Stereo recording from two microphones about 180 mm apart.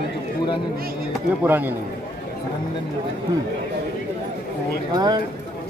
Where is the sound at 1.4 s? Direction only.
10° right (ahead or behind).